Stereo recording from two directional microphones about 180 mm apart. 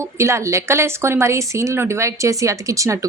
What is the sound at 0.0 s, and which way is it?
A woman's voice, 15° right (ahead or behind).